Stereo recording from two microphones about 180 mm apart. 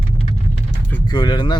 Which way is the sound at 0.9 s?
25° left (ahead or behind).